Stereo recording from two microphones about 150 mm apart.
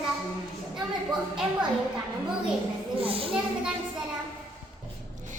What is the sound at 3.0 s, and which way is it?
Speech, 40° right (ahead or behind).